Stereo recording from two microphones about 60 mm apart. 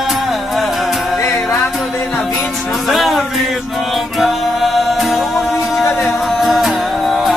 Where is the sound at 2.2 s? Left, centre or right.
Centre.